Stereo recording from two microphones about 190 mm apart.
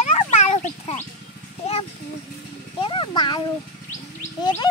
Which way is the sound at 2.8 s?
25° left (ahead or behind).